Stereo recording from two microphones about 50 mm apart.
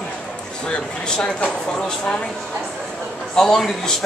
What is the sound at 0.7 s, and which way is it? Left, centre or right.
Speech, centre.